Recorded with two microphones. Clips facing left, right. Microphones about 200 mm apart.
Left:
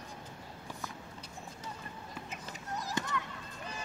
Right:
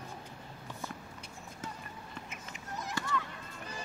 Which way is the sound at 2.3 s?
35° left (ahead or behind).